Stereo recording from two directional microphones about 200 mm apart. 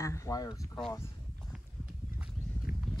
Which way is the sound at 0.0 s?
15° left (ahead or behind).